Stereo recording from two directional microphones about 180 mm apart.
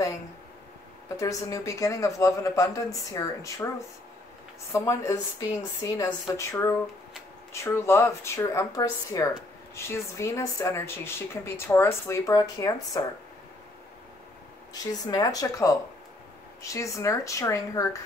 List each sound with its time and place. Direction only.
1.0 s speech: 20° left (ahead or behind)
4.7 s speech: 15° left (ahead or behind)
14.7 s speech: 20° left (ahead or behind)